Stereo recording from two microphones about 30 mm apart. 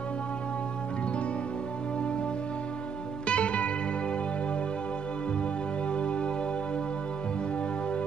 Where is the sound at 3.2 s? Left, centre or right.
Left.